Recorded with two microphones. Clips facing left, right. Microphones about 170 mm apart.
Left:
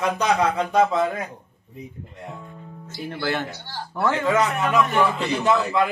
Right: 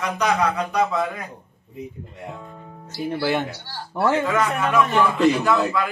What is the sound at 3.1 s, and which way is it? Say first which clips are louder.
Speech: right 3 dB; 15° right (ahead or behind).